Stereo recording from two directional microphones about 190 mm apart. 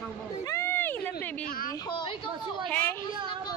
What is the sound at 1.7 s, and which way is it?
Speech, 20° left (ahead or behind).